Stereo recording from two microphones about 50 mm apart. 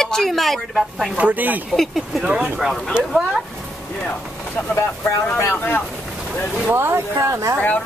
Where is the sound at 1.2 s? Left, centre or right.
Right.